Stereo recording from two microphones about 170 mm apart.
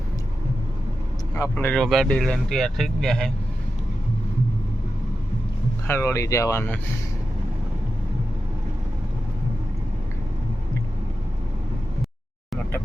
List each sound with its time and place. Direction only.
1.5 s speech: 5° left (ahead or behind)
5.9 s speech: 15° left (ahead or behind)